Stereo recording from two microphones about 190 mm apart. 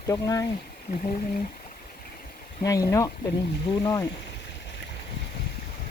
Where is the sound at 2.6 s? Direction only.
20° left (ahead or behind).